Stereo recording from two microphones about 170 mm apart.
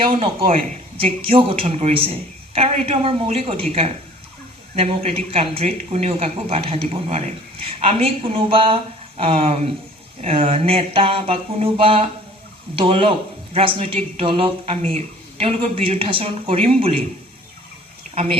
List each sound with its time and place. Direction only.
0.0 s speech: 30° right (ahead or behind)
18.1 s speech: 40° right (ahead or behind)